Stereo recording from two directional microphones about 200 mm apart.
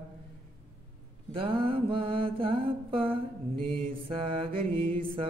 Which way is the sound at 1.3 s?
25° right (ahead or behind).